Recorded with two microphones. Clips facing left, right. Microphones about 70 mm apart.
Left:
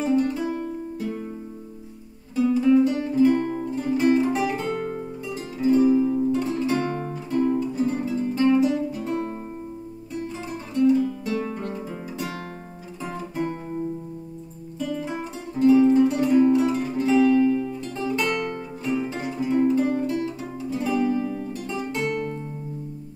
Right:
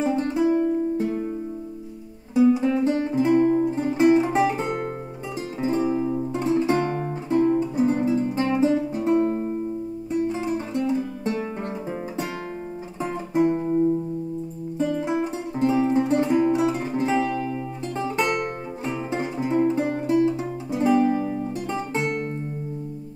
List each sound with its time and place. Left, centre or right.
0.0 s music: right
2.3 s music: right
13.0 s music: right
14.8 s music: right